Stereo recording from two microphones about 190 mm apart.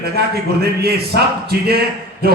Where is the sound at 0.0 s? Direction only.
55° right (ahead or behind).